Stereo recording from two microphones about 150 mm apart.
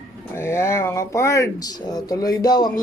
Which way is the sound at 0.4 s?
15° left (ahead or behind).